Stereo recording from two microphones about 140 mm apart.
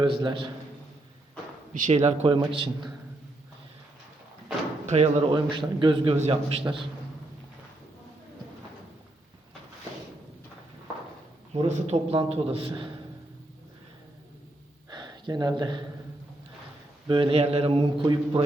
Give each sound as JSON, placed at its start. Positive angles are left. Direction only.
{"t": 0.0, "sound": "mantra", "side_deg": -35}
{"t": 1.7, "sound": "a man's voice", "side_deg": -55}
{"t": 2.5, "sound": "mantra", "side_deg": -40}
{"t": 4.9, "sound": "a man's voice", "side_deg": -50}
{"t": 5.3, "sound": "mantra", "side_deg": -35}
{"t": 6.1, "sound": "a man's voice", "side_deg": -50}
{"t": 11.5, "sound": "a man's voice", "side_deg": -45}
{"t": 14.8, "sound": "a sound", "side_deg": -30}
{"t": 17.1, "sound": "mantra", "side_deg": -40}